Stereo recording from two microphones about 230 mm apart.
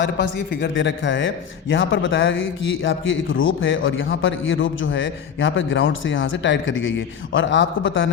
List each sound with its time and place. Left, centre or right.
0.0 s a man's voice: left